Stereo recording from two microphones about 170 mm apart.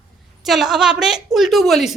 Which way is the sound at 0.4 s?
Centre (ahead or behind).